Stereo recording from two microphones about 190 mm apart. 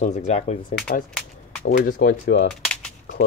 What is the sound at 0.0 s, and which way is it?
Speech, 40° left (ahead or behind).